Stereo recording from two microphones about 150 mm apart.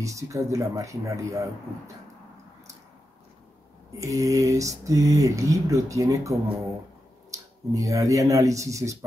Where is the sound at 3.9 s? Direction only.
20° right (ahead or behind).